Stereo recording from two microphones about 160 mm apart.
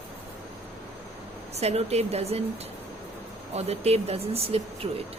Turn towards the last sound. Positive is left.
turn(degrees=-40)  # may be behind; listen again after turning